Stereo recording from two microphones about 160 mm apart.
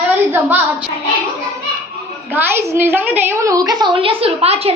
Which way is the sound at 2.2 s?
15° right (ahead or behind).